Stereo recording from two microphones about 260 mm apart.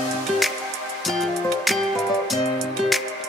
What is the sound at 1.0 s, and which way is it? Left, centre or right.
Music, centre.